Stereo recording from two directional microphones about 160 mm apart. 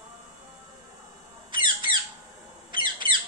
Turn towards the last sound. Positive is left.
turn(degrees=-30)  # may be behind; listen again after turning